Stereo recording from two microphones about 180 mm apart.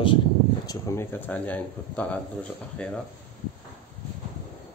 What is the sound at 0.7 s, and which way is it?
Speech, 15° left (ahead or behind).